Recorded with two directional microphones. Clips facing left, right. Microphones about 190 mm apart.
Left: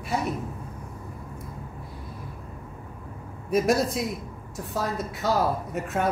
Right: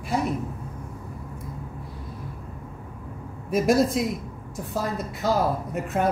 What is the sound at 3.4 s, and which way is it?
A man's voice, centre (ahead or behind).